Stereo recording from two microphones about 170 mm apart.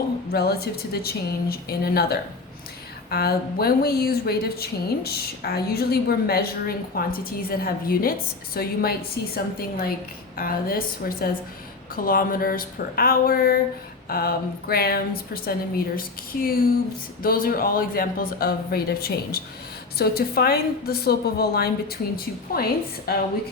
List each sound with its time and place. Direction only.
0.3 s a woman's voice: 65° left (ahead or behind)